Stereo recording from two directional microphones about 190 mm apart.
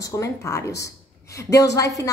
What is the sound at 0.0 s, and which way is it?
A woman's voice, 15° left (ahead or behind).